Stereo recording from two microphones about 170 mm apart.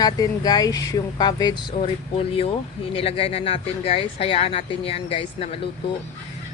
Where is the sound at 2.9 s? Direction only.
35° left (ahead or behind).